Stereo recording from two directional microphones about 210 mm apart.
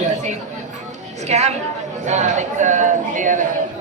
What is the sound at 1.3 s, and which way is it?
Speech, 30° right (ahead or behind).